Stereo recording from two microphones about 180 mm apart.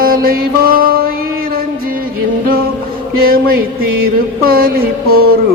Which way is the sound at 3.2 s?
55° right (ahead or behind).